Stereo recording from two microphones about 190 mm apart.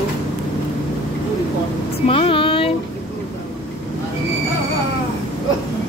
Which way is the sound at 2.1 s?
30° left (ahead or behind).